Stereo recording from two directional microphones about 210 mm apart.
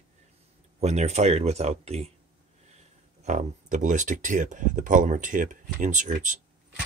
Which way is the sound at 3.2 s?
35° right (ahead or behind).